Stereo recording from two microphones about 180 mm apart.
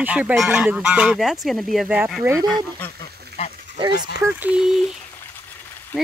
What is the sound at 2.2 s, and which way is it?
Speech, 15° right (ahead or behind).